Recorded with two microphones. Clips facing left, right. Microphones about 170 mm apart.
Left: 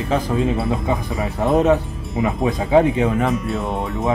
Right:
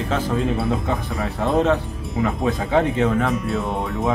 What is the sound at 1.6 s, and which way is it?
Speech, 15° left (ahead or behind).